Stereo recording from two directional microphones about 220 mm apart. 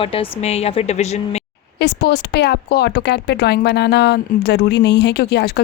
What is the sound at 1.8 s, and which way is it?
Speech, 45° left (ahead or behind).